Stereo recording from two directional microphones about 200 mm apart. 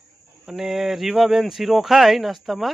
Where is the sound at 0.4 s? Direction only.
Centre (ahead or behind).